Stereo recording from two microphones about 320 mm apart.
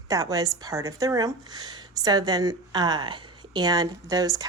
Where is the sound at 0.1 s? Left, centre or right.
Centre.